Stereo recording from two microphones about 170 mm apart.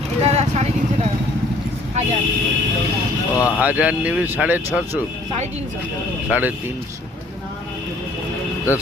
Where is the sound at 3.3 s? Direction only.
20° left (ahead or behind).